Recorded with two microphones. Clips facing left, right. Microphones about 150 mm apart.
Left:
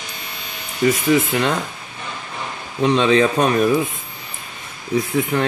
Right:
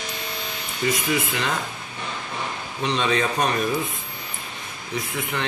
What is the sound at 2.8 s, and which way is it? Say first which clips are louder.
Speech: left 8 dB; 55° left (ahead or behind).